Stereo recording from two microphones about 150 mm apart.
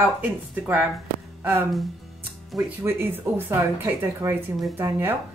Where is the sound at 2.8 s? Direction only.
15° right (ahead or behind).